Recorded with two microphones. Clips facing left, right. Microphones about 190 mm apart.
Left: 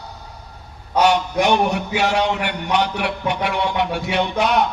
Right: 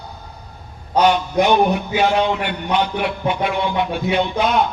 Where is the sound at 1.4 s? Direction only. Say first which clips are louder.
Right 4 dB; 75° left (ahead or behind).